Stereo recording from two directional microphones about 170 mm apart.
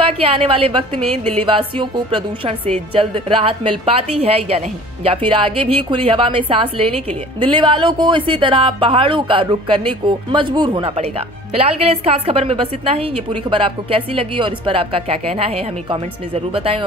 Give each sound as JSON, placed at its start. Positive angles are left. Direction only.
{"t": 0.4, "sound": "a woman's voice", "side_deg": -35}